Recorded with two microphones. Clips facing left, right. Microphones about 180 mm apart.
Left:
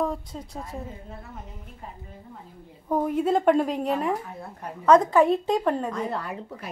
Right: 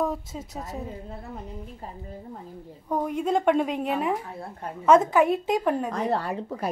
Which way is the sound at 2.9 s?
5° left (ahead or behind).